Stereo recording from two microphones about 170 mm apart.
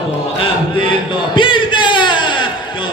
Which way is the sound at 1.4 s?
30° left (ahead or behind).